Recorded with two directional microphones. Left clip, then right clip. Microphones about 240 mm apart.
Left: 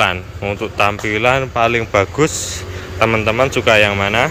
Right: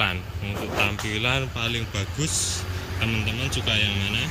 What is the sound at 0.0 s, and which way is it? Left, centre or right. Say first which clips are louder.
Speech: left 10 dB; centre.